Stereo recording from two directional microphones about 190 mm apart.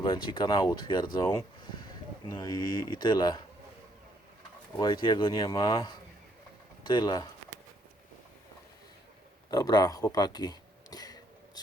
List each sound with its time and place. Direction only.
0.0 s speech: 25° left (ahead or behind)
4.8 s speech: 25° left (ahead or behind)
9.5 s a sound: 20° left (ahead or behind)